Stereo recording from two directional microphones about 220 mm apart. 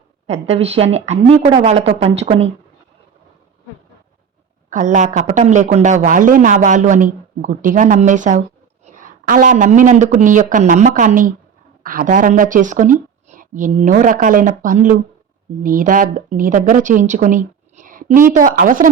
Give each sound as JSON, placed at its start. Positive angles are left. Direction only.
{"t": 0.3, "sound": "speech", "side_deg": -25}
{"t": 4.7, "sound": "a man's voice", "side_deg": -35}